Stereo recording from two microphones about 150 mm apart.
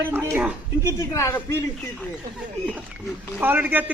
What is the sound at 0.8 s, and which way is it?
Speech, 20° left (ahead or behind).